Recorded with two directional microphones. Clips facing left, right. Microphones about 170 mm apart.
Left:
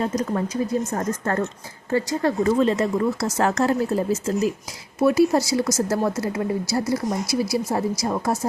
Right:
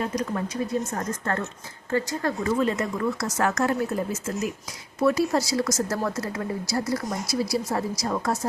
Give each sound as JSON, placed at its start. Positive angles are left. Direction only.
{"t": 0.0, "sound": "a woman's voice", "side_deg": 25}
{"t": 2.4, "sound": "a woman's voice", "side_deg": 30}